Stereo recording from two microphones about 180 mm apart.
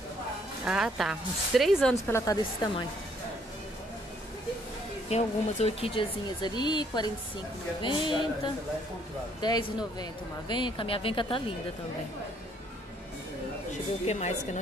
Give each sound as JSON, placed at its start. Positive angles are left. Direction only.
{"t": 0.7, "sound": "speech", "side_deg": -5}
{"t": 2.0, "sound": "speech", "side_deg": 15}
{"t": 5.1, "sound": "speech", "side_deg": 35}
{"t": 5.9, "sound": "speech", "side_deg": 25}
{"t": 9.4, "sound": "speech", "side_deg": 25}
{"t": 14.0, "sound": "speech", "side_deg": 40}